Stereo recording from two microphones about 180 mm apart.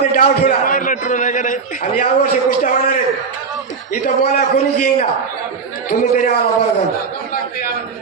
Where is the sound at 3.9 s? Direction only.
55° left (ahead or behind).